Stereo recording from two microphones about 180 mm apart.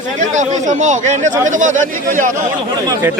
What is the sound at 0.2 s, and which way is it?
Speech, 40° right (ahead or behind).